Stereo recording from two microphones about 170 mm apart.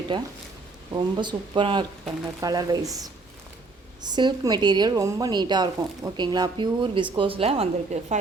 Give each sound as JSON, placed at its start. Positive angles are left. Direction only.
{"t": 0.1, "sound": "a woman's voice", "side_deg": -25}
{"t": 4.0, "sound": "a woman's voice", "side_deg": -25}